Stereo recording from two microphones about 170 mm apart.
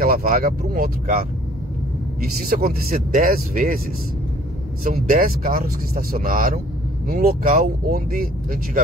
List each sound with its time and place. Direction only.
0.0 s speech: 55° right (ahead or behind)
2.2 s speech: 60° right (ahead or behind)
4.8 s speech: 55° right (ahead or behind)